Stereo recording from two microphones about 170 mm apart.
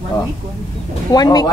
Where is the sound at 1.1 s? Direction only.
25° left (ahead or behind).